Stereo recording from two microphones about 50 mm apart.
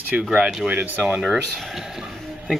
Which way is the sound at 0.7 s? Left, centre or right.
Right.